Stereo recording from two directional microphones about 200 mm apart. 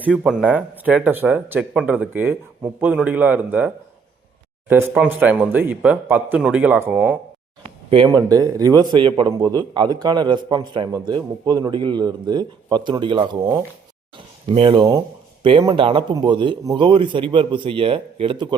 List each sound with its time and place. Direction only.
0.1 s speech: 5° right (ahead or behind)
4.7 s speech: 10° right (ahead or behind)
7.9 s a man's voice: 20° right (ahead or behind)